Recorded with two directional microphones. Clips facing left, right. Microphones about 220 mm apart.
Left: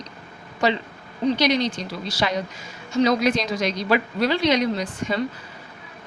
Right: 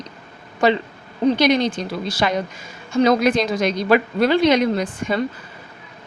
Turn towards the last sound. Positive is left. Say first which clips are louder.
# right 4 dB
turn(degrees=-55)  # may be behind; listen again after turning